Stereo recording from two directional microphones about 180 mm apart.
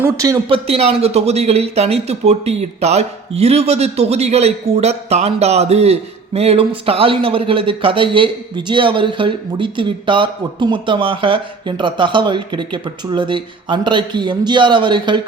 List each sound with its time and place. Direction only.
0.0 s speech: 20° right (ahead or behind)
0.4 s speech: 30° right (ahead or behind)